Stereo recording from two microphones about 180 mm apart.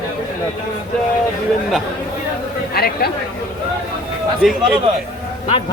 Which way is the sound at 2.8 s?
60° left (ahead or behind).